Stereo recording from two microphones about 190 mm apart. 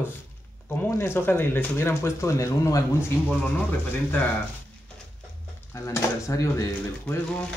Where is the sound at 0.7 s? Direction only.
10° left (ahead or behind).